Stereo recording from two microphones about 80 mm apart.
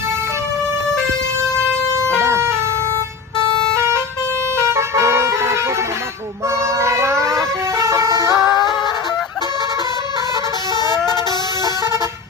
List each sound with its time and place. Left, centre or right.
2.1 s vehicle: right
4.6 s vehicle: right
6.7 s vehicle: right
10.8 s vehicle horn: left